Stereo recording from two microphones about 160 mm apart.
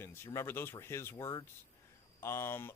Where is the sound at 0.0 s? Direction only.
15° left (ahead or behind).